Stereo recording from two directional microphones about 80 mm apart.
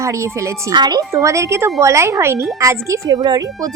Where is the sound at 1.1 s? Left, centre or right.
Right.